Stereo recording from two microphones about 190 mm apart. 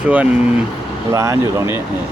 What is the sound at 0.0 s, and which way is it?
Speech, 10° right (ahead or behind).